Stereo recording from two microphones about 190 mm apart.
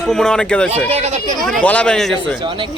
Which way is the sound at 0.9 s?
35° right (ahead or behind).